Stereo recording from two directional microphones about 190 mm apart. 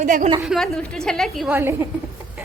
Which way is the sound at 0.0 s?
45° right (ahead or behind).